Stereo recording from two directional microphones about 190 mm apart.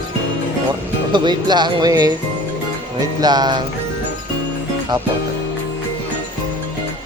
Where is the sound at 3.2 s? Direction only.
20° right (ahead or behind).